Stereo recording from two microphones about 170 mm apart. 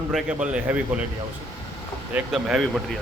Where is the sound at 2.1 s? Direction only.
5° right (ahead or behind).